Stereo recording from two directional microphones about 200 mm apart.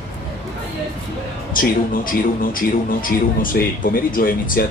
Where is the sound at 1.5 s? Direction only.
45° left (ahead or behind).